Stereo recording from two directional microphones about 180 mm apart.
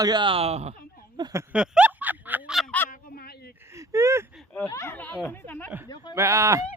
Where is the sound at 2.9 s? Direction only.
60° left (ahead or behind).